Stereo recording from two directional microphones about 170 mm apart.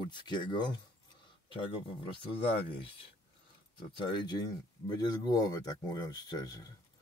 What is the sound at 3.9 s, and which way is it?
Speech, 25° left (ahead or behind).